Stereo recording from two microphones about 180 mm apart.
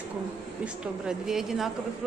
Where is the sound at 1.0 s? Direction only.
Centre (ahead or behind).